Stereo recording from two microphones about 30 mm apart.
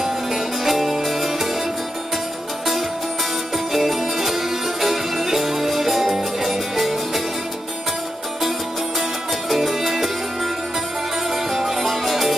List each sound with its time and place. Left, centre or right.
0.0 s music: centre
3.5 s music: centre
9.6 s music: centre
11.5 s music: centre